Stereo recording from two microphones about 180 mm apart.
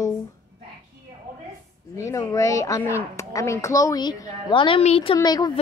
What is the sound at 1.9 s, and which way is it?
A woman's voice, 15° left (ahead or behind).